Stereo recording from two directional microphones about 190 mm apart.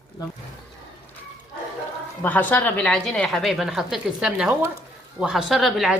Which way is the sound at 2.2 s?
10° left (ahead or behind).